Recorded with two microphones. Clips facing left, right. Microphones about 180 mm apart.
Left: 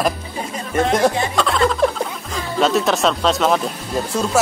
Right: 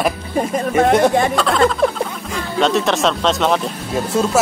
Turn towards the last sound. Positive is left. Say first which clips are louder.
# right 3 dB
turn(degrees=0)  # may be behind; listen again after turning